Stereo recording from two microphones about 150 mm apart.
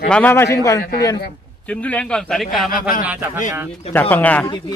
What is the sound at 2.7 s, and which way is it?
Speech, 70° left (ahead or behind).